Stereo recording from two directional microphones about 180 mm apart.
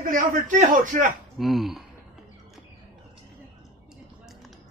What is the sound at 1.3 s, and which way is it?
Speech, centre (ahead or behind).